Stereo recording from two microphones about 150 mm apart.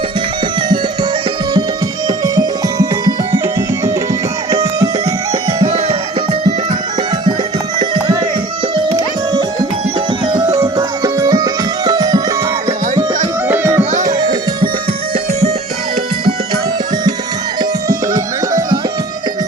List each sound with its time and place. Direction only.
2.0 s music: 25° right (ahead or behind)
5.6 s music: 45° right (ahead or behind)
7.8 s music: 30° right (ahead or behind)
13.5 s music: 15° right (ahead or behind)
14.0 s music: 25° right (ahead or behind)
17.6 s music: 20° right (ahead or behind)